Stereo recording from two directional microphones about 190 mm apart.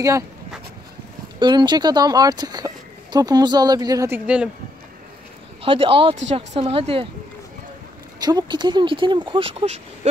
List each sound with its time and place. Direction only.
1.4 s speech: 25° right (ahead or behind)
5.6 s speech: 30° right (ahead or behind)
8.2 s speech: 20° right (ahead or behind)